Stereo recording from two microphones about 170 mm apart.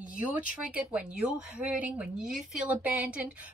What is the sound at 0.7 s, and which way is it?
Speech, 5° right (ahead or behind).